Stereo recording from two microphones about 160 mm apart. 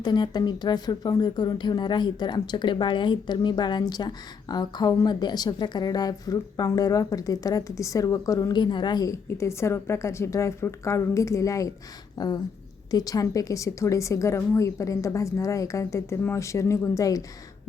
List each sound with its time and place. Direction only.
0.0 s speech: 25° left (ahead or behind)